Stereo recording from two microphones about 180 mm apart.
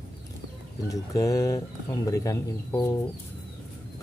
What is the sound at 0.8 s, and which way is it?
Speech, 20° left (ahead or behind).